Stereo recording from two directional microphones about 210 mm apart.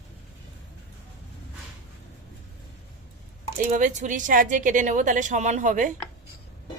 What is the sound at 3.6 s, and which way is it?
A woman's voice, 40° right (ahead or behind).